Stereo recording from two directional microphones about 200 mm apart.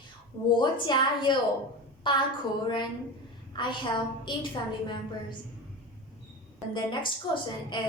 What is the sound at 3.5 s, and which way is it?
Speech, 25° left (ahead or behind).